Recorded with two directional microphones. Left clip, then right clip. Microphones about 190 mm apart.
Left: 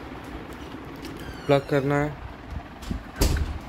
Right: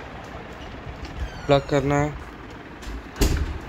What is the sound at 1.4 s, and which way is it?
Speech, 10° left (ahead or behind).